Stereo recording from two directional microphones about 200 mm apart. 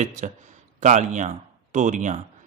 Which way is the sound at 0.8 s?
40° right (ahead or behind).